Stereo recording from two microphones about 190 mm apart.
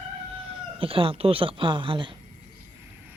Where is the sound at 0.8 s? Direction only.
30° right (ahead or behind).